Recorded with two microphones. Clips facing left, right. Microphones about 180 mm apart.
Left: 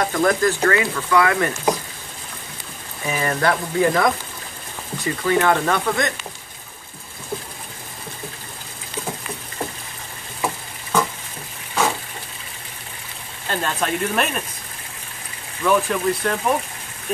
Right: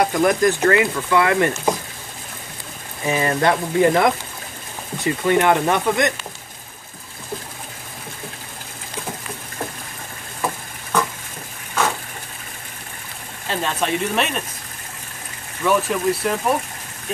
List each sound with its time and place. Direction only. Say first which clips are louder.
0.0 s speech: right 2 dB; 15° right (ahead or behind)
3.1 s speech: right 2 dB; 25° right (ahead or behind)
5.2 s speech: right 1 dB; 20° right (ahead or behind)
10.4 s stir: even; 5° left (ahead or behind)
13.5 s speech: right 1 dB; centre (ahead or behind)
15.6 s speech: even; 5° right (ahead or behind)